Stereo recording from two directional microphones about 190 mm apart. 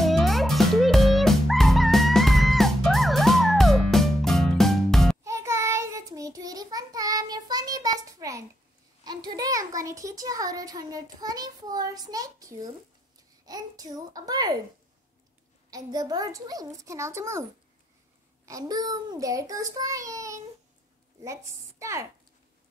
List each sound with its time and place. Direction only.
0.0 s music: centre (ahead or behind)
5.2 s child singing: 15° right (ahead or behind)
9.0 s a child's voice: 20° right (ahead or behind)
15.7 s a child's voice: 20° right (ahead or behind)